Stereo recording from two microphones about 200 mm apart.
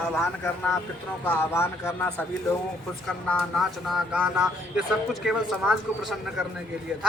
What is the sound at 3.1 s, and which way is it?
Speech, 5° left (ahead or behind).